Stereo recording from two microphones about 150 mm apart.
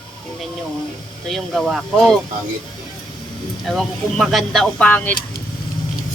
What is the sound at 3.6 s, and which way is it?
Speech, centre (ahead or behind).